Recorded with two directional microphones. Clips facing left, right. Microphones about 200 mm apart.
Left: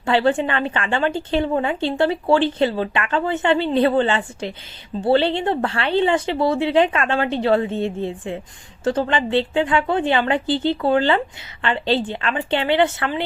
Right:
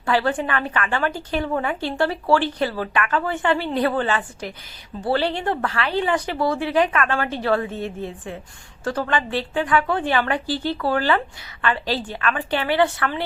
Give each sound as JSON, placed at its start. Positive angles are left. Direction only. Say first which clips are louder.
{"t": 0.0, "sound": "a woman's voice", "louder": "left 4 dB", "side_deg": 25}